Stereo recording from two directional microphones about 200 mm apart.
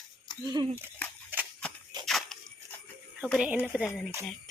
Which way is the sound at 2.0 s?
Centre (ahead or behind).